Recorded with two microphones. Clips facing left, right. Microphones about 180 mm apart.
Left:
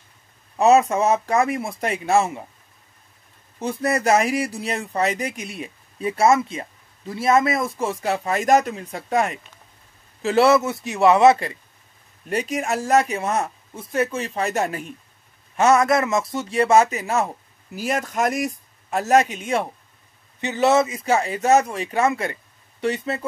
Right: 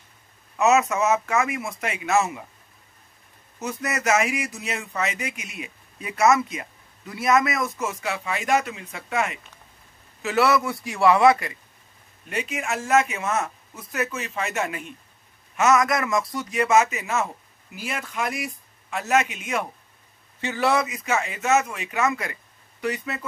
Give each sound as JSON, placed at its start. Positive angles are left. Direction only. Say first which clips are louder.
{"t": 0.6, "sound": "speech", "louder": "left 4 dB", "side_deg": 30}
{"t": 3.5, "sound": "speech", "louder": "left 6 dB", "side_deg": 30}
{"t": 12.3, "sound": "speech", "louder": "left 5 dB", "side_deg": 40}
{"t": 20.3, "sound": "speech", "louder": "left 5 dB", "side_deg": 20}